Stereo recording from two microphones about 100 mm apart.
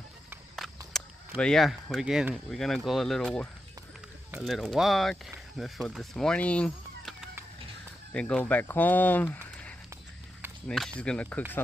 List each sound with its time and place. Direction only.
0.6 s a sound: centre (ahead or behind)
1.4 s speech: 5° left (ahead or behind)
8.1 s speech: 10° left (ahead or behind)
10.7 s speech: centre (ahead or behind)
11.0 s speech: 10° left (ahead or behind)